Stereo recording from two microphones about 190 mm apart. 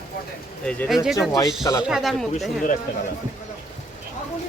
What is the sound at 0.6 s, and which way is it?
Speech, centre (ahead or behind).